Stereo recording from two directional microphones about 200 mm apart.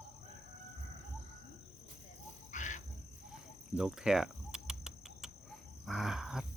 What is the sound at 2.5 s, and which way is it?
Cricket, 40° left (ahead or behind).